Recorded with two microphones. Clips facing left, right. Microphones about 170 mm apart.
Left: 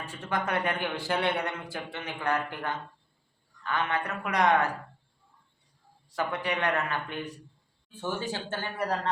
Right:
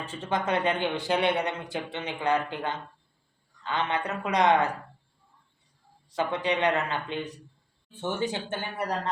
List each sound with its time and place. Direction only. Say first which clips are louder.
0.0 s a man's voice: right 2 dB; 20° right (ahead or behind)
6.1 s a man's voice: right 3 dB; 20° right (ahead or behind)